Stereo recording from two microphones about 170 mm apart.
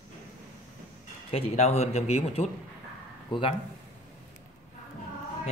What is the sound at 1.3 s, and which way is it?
Speech, 35° left (ahead or behind).